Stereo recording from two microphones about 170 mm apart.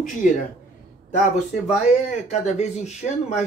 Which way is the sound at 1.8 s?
40° left (ahead or behind).